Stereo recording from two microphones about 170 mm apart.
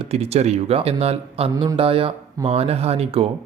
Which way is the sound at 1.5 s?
20° right (ahead or behind).